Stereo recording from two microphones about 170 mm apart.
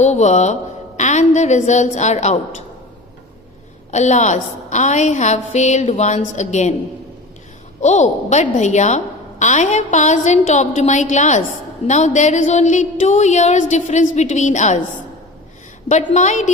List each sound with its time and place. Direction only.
0.0 s speech: 40° left (ahead or behind)
3.9 s speech: 45° left (ahead or behind)
7.8 s speech: 45° left (ahead or behind)
16.1 s speech: 45° left (ahead or behind)